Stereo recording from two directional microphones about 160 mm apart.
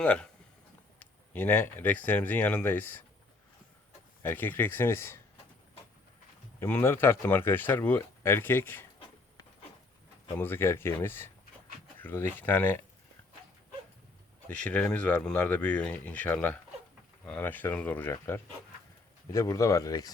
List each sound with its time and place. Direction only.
0.0 s speech: 5° left (ahead or behind)
4.2 s speech: 10° left (ahead or behind)
6.6 s speech: 15° left (ahead or behind)
10.3 s speech: 15° left (ahead or behind)
14.4 s speech: 5° left (ahead or behind)